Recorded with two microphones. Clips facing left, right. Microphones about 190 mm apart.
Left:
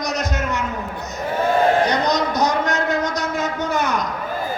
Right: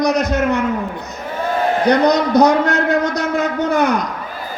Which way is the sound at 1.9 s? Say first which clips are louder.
Right 7 dB; 60° right (ahead or behind).